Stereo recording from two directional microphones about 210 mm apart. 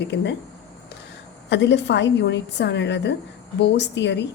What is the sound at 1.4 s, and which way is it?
A woman's voice, 55° left (ahead or behind).